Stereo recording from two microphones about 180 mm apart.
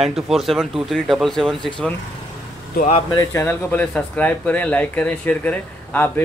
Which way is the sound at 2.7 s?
45° left (ahead or behind).